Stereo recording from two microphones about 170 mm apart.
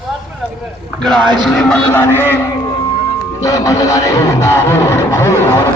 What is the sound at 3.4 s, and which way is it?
Music, 20° left (ahead or behind).